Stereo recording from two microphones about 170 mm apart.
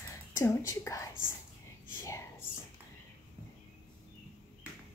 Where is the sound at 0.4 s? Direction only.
15° left (ahead or behind).